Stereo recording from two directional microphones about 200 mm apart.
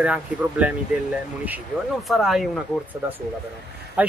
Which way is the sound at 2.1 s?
Centre (ahead or behind).